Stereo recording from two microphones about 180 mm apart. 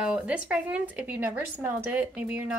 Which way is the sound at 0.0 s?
5° right (ahead or behind).